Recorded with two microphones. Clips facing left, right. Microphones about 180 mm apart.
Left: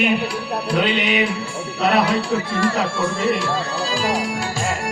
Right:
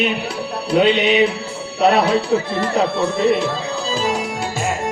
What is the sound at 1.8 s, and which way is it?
Speech, 25° right (ahead or behind).